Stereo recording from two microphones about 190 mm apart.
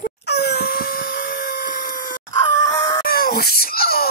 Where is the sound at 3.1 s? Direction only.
55° left (ahead or behind).